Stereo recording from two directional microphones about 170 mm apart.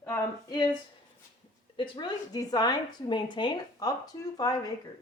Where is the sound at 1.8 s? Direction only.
25° left (ahead or behind).